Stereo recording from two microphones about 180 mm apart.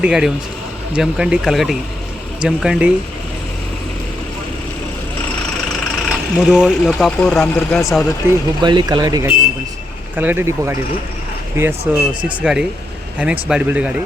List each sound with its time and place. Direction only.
0.0 s speech: 5° right (ahead or behind)
6.1 s speech: centre (ahead or behind)
8.2 s speech: 10° right (ahead or behind)
8.6 s speech: 25° right (ahead or behind)
11.9 s speech: 10° right (ahead or behind)